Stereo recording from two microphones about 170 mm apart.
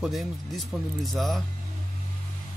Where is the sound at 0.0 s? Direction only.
Centre (ahead or behind).